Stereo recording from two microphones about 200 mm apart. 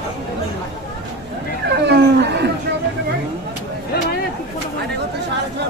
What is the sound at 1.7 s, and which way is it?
Speech, 55° right (ahead or behind).